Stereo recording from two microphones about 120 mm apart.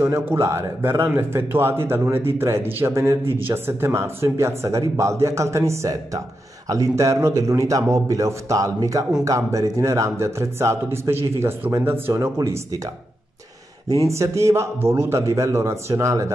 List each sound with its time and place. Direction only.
0.3 s speech: 25° right (ahead or behind)
14.0 s speech: 25° right (ahead or behind)